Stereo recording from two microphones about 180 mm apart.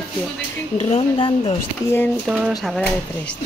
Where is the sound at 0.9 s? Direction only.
30° left (ahead or behind).